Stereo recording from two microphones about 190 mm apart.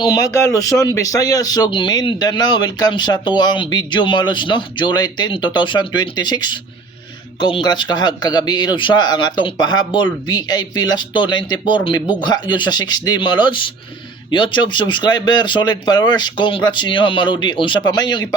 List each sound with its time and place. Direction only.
0.0 s speech: 20° left (ahead or behind)